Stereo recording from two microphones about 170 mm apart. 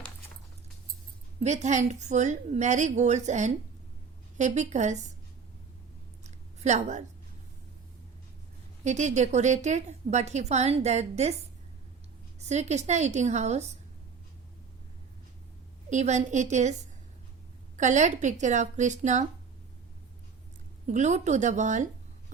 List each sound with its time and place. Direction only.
1.4 s a woman's voice: 40° right (ahead or behind)
6.2 s a sound: 40° right (ahead or behind)
8.8 s a woman's voice: 45° right (ahead or behind)
12.4 s a woman's voice: 40° right (ahead or behind)
15.9 s a woman's voice: 45° right (ahead or behind)
17.7 s a woman's voice: 45° right (ahead or behind)
20.8 s a woman's voice: 45° right (ahead or behind)